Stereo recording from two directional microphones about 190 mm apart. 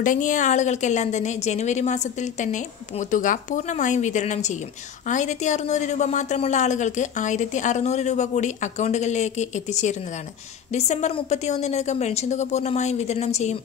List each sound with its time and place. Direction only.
0.0 s a woman's voice: 40° left (ahead or behind)
3.1 s a woman's voice: 45° left (ahead or behind)